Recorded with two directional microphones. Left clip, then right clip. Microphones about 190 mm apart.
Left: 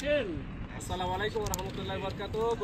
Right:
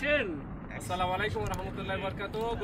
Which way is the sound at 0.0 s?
15° left (ahead or behind).